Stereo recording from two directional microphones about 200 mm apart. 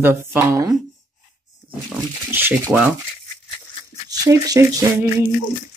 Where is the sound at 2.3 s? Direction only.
10° right (ahead or behind).